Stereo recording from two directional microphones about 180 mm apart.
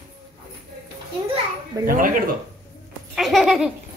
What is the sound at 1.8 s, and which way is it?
Speech, 50° right (ahead or behind).